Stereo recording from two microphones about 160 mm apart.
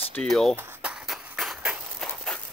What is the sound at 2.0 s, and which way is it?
Walk, 5° left (ahead or behind).